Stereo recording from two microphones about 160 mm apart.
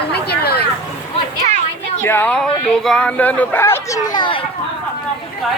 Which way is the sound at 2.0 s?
10° left (ahead or behind).